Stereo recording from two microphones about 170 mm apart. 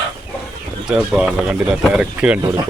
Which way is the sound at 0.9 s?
5° right (ahead or behind).